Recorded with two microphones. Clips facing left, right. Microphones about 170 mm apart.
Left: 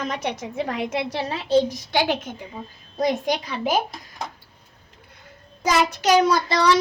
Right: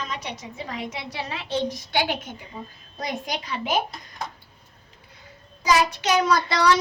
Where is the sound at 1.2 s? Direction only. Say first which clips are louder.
Left 6 dB; 40° left (ahead or behind).